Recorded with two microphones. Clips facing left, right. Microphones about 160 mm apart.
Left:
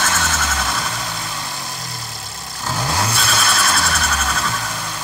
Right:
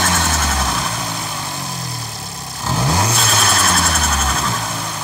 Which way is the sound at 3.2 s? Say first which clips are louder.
Right 2 dB; 40° right (ahead or behind).